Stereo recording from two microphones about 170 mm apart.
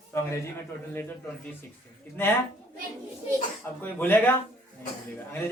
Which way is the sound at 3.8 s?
10° left (ahead or behind).